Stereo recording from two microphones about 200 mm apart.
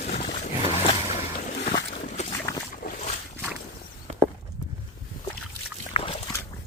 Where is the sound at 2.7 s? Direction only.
40° left (ahead or behind).